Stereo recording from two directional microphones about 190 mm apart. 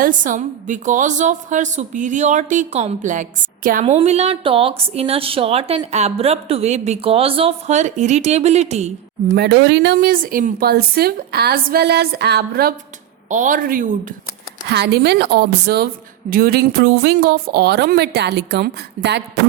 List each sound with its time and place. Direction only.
0.0 s a woman's voice: 45° right (ahead or behind)
3.8 s a woman's voice: 35° right (ahead or behind)
9.3 s a woman's voice: 60° right (ahead or behind)
13.3 s a woman's voice: 45° right (ahead or behind)
14.7 s a woman's voice: 60° right (ahead or behind)